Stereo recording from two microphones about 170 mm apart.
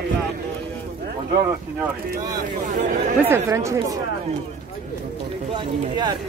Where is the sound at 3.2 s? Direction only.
15° right (ahead or behind).